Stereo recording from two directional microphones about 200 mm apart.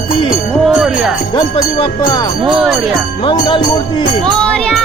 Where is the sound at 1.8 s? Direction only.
20° left (ahead or behind).